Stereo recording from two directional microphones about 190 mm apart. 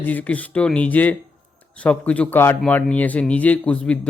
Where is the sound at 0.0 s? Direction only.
10° left (ahead or behind).